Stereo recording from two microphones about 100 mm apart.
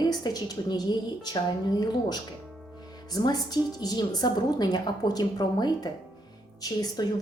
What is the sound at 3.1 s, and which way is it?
A woman's voice, 40° left (ahead or behind).